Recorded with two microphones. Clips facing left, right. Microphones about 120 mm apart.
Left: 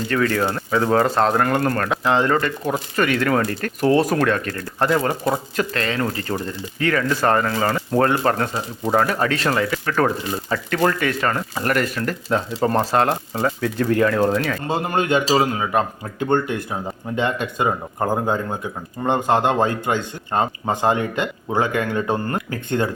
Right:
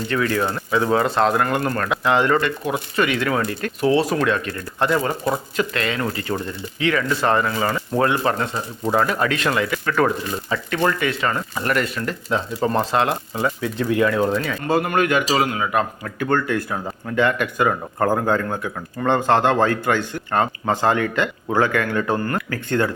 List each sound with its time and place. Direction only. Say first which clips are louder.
0.1 s speech: left 1 dB; 45° left (ahead or behind)
14.7 s speech: right 2 dB; 25° left (ahead or behind)